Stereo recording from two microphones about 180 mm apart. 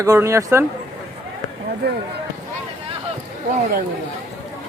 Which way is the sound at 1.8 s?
65° right (ahead or behind).